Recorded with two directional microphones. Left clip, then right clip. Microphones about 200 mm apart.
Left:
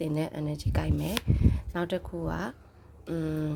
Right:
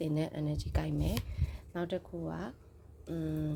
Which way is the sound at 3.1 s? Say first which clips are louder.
Left 6 dB; 20° left (ahead or behind).